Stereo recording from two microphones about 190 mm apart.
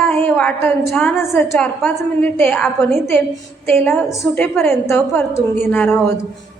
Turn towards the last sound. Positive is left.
turn(degrees=10)  # may be behind; listen again after turning